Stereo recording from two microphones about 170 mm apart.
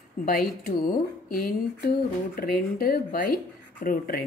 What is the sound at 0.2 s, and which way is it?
A woman's voice, 60° left (ahead or behind).